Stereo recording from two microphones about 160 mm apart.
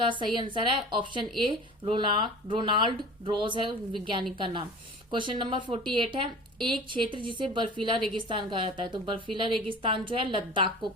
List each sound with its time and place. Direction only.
0.0 s speech: 30° right (ahead or behind)